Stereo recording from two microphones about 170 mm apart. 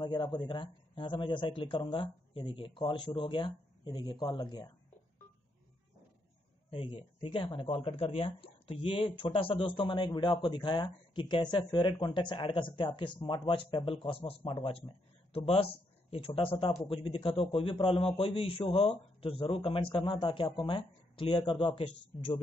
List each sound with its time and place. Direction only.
0.0 s speech: 25° left (ahead or behind)
6.7 s a man's voice: 30° left (ahead or behind)